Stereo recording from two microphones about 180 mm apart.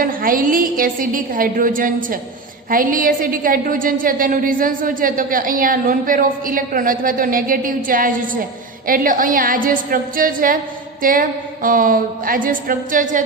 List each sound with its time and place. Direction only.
0.0 s a woman's voice: 50° right (ahead or behind)